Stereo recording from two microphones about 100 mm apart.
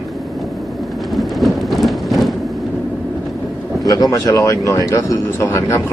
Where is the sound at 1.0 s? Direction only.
Centre (ahead or behind).